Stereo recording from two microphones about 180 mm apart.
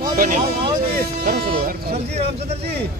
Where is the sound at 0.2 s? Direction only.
50° right (ahead or behind).